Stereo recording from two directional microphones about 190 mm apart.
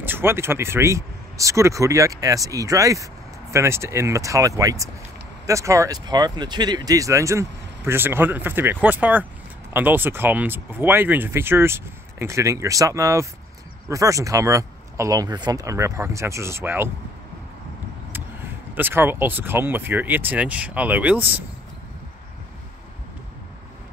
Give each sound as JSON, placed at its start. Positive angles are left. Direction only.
{"t": 0.0, "sound": "speech", "side_deg": -10}
{"t": 18.1, "sound": "speech", "side_deg": -10}